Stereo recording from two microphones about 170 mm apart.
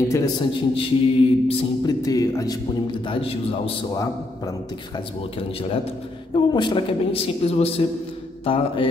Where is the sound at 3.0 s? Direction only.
35° left (ahead or behind).